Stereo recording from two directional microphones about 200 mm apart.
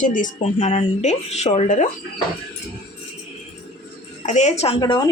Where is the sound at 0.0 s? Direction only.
40° left (ahead or behind).